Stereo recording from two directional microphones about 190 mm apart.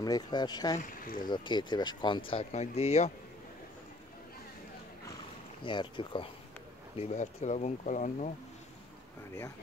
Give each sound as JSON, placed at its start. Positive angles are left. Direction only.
{"t": 0.0, "sound": "speech", "side_deg": 20}
{"t": 0.7, "sound": "speech", "side_deg": 50}
{"t": 1.3, "sound": "speech", "side_deg": 25}
{"t": 5.6, "sound": "speech", "side_deg": 25}